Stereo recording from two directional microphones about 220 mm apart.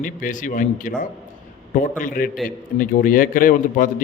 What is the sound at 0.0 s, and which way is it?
A man's voice, 35° left (ahead or behind).